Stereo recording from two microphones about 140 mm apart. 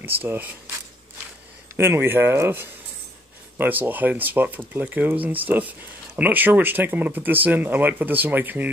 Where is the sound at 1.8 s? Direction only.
15° right (ahead or behind).